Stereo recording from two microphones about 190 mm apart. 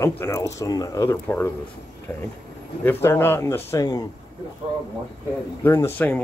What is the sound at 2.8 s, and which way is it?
Speech, 10° left (ahead or behind).